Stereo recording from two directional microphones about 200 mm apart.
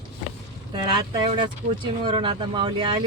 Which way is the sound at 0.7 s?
25° right (ahead or behind).